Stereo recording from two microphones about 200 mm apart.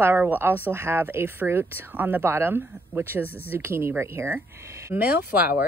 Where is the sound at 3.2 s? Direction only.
10° left (ahead or behind).